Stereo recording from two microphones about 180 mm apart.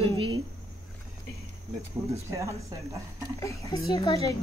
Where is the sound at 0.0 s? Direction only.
25° right (ahead or behind).